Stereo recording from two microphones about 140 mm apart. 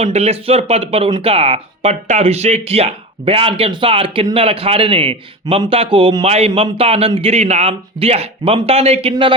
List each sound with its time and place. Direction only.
0.0 s a man's voice: 50° right (ahead or behind)